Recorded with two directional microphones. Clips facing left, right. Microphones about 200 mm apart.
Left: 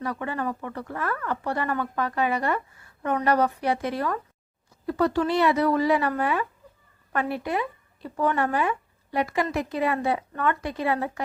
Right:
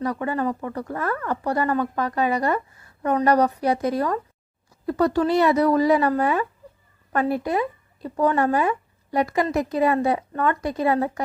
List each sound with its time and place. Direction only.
0.0 s speech: 40° right (ahead or behind)